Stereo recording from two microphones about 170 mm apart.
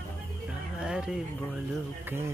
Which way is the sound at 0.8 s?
5° right (ahead or behind).